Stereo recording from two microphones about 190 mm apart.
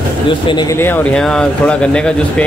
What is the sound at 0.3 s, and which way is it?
Speech, 25° left (ahead or behind).